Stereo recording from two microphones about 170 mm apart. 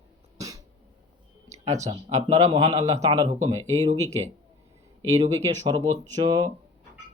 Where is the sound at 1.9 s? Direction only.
40° right (ahead or behind).